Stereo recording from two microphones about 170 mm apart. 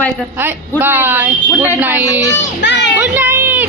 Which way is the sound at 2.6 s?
90° left.